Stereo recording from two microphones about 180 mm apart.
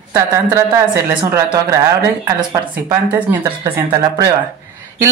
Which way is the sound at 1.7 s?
15° right (ahead or behind).